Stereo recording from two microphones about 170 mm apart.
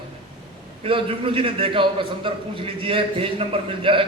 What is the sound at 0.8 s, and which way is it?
A man's voice, 30° right (ahead or behind).